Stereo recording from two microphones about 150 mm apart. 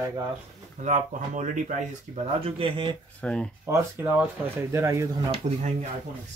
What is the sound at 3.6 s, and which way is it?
Speech, 20° right (ahead or behind).